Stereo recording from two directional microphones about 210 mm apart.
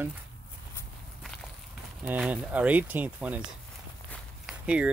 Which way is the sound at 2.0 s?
5° right (ahead or behind).